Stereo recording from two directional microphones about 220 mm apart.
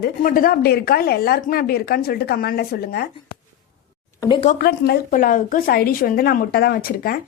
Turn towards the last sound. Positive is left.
turn(degrees=45)  # may be behind; listen again after turning